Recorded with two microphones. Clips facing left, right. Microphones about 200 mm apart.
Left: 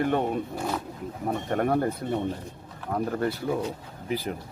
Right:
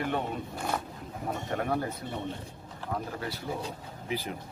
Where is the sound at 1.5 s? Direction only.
50° left (ahead or behind).